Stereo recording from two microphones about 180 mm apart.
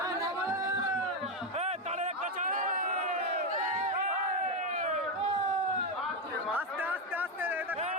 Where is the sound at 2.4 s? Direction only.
45° right (ahead or behind).